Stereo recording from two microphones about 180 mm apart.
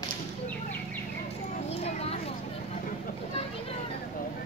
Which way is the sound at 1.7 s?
35° left (ahead or behind).